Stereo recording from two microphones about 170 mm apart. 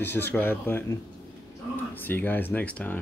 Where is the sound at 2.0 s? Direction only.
10° left (ahead or behind).